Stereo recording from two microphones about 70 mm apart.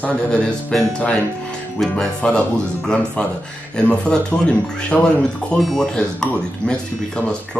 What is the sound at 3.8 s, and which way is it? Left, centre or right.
Speech, centre.